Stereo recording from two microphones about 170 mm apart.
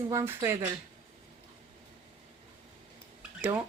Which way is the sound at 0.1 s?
15° right (ahead or behind).